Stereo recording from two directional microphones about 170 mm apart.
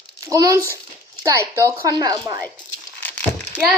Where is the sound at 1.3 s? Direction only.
20° right (ahead or behind).